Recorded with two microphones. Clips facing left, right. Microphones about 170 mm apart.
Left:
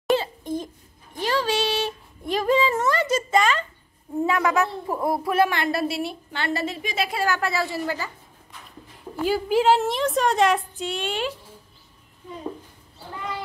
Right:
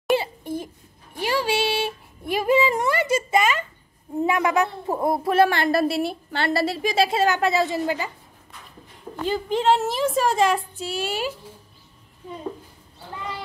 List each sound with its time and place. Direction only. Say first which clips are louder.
0.1 s babbling: even; 10° right (ahead or behind)
1.2 s a woman's voice: right 1 dB; 10° right (ahead or behind)
9.1 s a woman's voice: left 3 dB; 5° left (ahead or behind)